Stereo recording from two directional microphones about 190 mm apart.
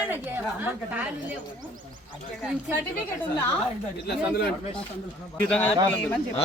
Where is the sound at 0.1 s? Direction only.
10° right (ahead or behind).